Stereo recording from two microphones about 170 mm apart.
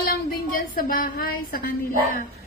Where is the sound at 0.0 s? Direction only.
60° left (ahead or behind).